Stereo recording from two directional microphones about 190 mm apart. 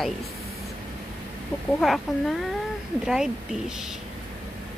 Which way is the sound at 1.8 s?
Centre (ahead or behind).